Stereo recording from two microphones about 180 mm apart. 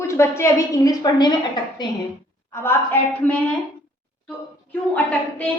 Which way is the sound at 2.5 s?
15° left (ahead or behind).